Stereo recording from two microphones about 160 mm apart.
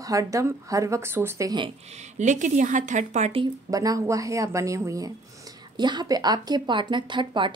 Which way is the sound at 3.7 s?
20° right (ahead or behind).